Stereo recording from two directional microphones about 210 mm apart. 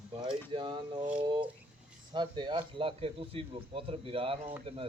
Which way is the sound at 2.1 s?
20° right (ahead or behind).